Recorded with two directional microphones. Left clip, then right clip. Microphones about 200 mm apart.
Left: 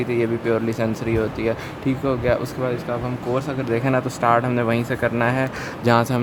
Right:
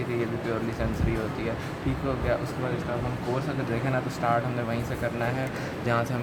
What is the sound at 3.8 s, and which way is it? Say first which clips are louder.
Speech: left 8 dB; 50° left (ahead or behind).